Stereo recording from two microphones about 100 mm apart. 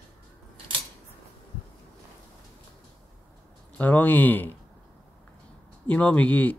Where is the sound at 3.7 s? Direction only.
20° left (ahead or behind).